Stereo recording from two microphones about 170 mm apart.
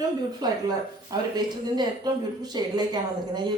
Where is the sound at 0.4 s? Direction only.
25° right (ahead or behind).